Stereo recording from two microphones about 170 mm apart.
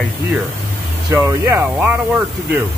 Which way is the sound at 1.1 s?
15° right (ahead or behind).